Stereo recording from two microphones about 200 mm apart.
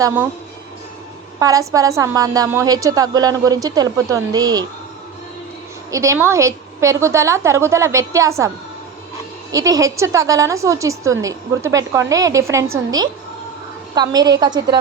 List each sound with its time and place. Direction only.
0.0 s a woman's voice: 10° right (ahead or behind)
1.4 s a woman's voice: 15° right (ahead or behind)
5.9 s a woman's voice: 15° right (ahead or behind)
9.5 s a woman's voice: 15° right (ahead or behind)